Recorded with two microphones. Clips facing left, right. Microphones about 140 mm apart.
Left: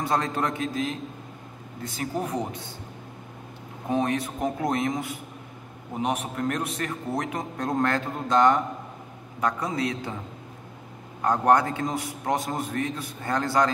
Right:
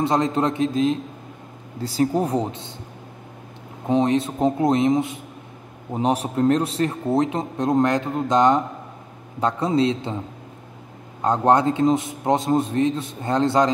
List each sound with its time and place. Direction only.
0.0 s a man's voice: 20° right (ahead or behind)
1.8 s speech: 35° right (ahead or behind)
3.9 s a man's voice: 25° right (ahead or behind)
11.2 s a man's voice: 25° right (ahead or behind)